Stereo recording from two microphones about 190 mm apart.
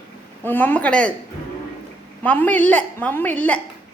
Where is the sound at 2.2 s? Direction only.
10° left (ahead or behind).